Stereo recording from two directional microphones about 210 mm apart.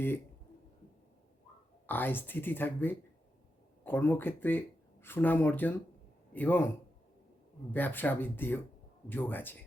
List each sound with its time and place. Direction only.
1.9 s speech: 10° left (ahead or behind)
7.7 s speech: 10° left (ahead or behind)